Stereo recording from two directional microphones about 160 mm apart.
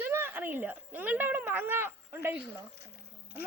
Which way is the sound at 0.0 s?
15° right (ahead or behind).